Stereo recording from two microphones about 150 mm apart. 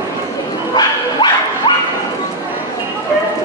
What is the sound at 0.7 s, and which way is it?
Bow-wow, 30° left (ahead or behind).